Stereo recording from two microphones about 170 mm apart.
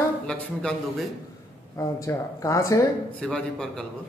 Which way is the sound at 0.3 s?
5° left (ahead or behind).